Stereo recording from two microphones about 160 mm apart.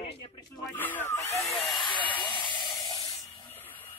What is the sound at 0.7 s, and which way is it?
Speech, 10° left (ahead or behind).